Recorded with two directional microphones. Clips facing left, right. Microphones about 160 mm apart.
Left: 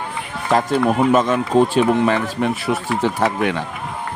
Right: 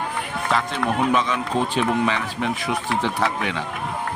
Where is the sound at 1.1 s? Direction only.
45° left (ahead or behind).